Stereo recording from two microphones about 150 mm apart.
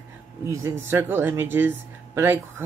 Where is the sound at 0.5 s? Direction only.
15° right (ahead or behind).